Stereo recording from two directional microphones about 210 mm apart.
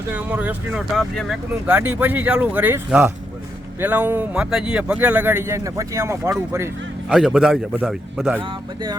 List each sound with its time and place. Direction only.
0.1 s speech: 5° right (ahead or behind)
7.1 s a man's voice: centre (ahead or behind)
8.4 s speech: 20° right (ahead or behind)